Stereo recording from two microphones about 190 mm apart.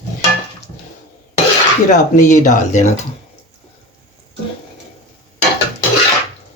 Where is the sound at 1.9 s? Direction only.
40° left (ahead or behind).